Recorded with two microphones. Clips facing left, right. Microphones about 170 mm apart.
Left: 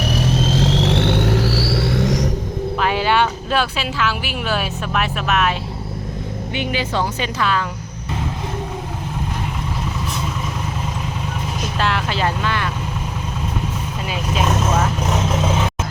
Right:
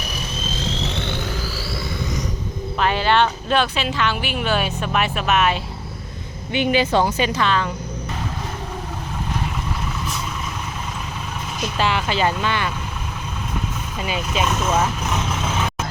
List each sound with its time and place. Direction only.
0.0 s music: 80° left
2.7 s speech: 10° left (ahead or behind)
6.5 s speech: 20° right (ahead or behind)
7.2 s speech: 5° left (ahead or behind)
11.8 s speech: centre (ahead or behind)